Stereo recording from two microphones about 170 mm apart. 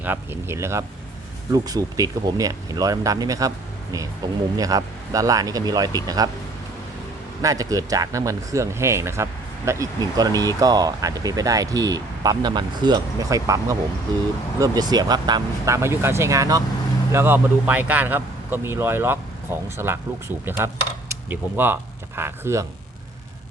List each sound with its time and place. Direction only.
0.0 s speech: 10° right (ahead or behind)
7.4 s speech: 20° right (ahead or behind)